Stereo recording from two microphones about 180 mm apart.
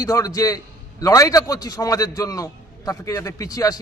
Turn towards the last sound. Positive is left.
turn(degrees=20)  # may be behind; listen again after turning